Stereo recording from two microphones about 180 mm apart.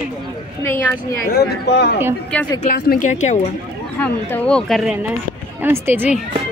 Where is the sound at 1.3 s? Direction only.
65° left (ahead or behind).